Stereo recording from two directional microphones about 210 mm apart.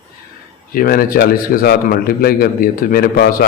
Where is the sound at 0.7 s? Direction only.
45° left (ahead or behind).